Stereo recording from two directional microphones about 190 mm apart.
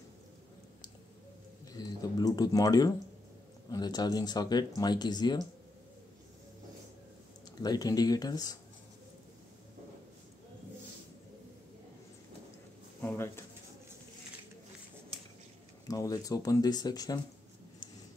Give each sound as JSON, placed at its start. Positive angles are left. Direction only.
{"t": 1.7, "sound": "speech", "side_deg": 20}
{"t": 7.6, "sound": "speech", "side_deg": 20}
{"t": 13.0, "sound": "a sound", "side_deg": 10}
{"t": 15.9, "sound": "speech", "side_deg": 20}